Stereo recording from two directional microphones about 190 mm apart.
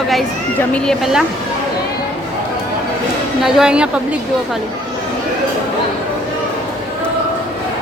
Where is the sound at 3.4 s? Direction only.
5° right (ahead or behind).